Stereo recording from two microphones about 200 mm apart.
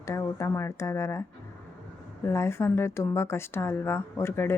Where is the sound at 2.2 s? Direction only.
15° left (ahead or behind).